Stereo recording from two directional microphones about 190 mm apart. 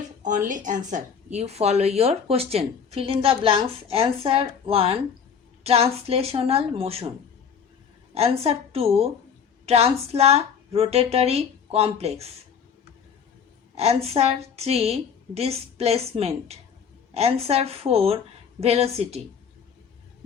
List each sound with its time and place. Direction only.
0.2 s a woman's voice: 40° right (ahead or behind)
6.1 s a woman's voice: 30° right (ahead or behind)
8.1 s a woman's voice: 30° right (ahead or behind)
13.7 s a woman's voice: 30° right (ahead or behind)